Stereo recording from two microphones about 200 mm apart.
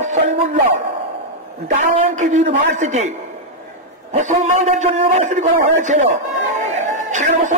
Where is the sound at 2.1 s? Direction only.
35° right (ahead or behind).